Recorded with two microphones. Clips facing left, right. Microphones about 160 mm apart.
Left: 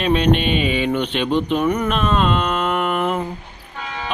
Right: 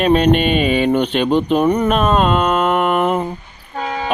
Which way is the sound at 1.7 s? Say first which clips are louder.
Right 5 dB; 40° right (ahead or behind).